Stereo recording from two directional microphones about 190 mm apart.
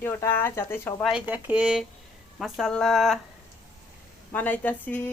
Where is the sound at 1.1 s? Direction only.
10° right (ahead or behind).